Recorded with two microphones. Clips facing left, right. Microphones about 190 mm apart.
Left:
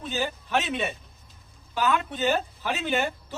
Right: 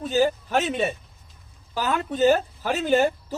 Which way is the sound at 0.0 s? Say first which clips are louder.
Right 9 dB; 40° right (ahead or behind).